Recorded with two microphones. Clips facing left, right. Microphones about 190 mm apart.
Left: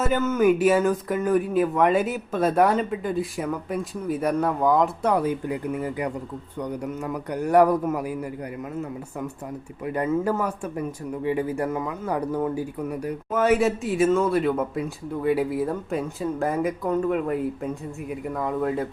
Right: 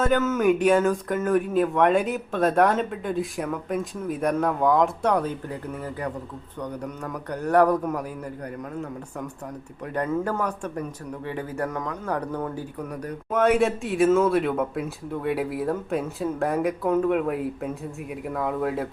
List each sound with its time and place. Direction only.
0.0 s a man's voice: 5° left (ahead or behind)